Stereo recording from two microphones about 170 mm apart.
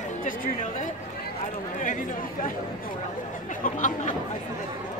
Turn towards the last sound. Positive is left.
turn(degrees=50)  # may be behind; listen again after turning